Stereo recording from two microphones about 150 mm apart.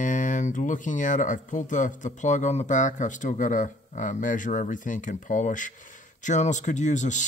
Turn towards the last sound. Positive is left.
turn(degrees=55)  # may be behind; listen again after turning